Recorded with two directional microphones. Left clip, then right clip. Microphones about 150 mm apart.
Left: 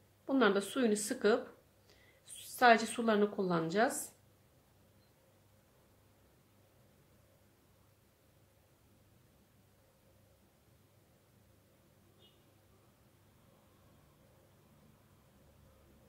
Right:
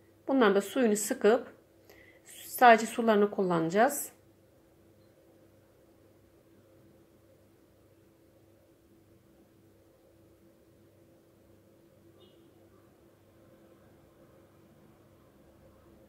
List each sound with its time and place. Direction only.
0.2 s a woman's voice: 15° right (ahead or behind)
2.6 s a woman's voice: 15° right (ahead or behind)